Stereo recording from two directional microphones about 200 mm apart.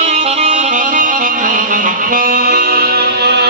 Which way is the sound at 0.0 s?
35° right (ahead or behind).